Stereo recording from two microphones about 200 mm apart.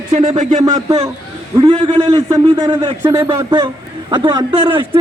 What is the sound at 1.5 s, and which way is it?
A man's voice, 25° right (ahead or behind).